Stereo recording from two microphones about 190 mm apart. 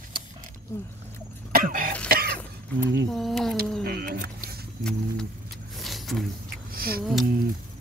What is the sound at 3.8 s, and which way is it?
Vehicle, 55° right (ahead or behind).